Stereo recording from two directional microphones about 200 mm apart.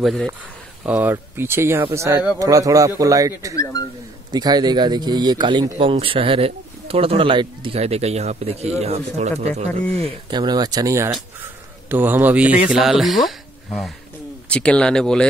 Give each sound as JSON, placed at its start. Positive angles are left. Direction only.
{"t": 0.0, "sound": "speech", "side_deg": 0}
{"t": 10.0, "sound": "speech", "side_deg": -20}